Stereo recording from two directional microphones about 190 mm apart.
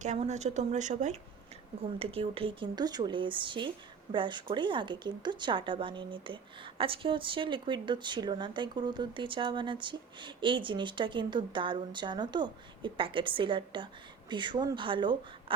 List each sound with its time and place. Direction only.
0.0 s a woman's voice: 35° right (ahead or behind)